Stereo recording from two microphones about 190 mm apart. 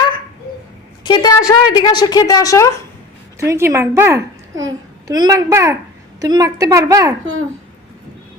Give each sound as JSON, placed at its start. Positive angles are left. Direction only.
{"t": 1.0, "sound": "a woman's voice", "side_deg": 20}
{"t": 3.4, "sound": "a child's voice", "side_deg": -15}